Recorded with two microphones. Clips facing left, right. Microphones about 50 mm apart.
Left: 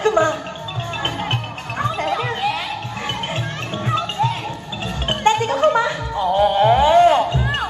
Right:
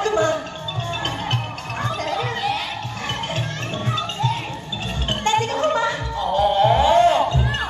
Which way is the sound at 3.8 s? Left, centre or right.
Left.